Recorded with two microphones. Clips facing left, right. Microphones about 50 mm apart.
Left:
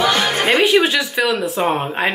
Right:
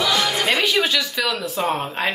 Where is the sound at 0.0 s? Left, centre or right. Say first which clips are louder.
Left 4 dB; left.